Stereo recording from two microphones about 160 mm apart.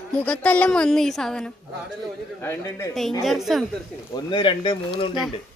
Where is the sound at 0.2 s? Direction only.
10° left (ahead or behind).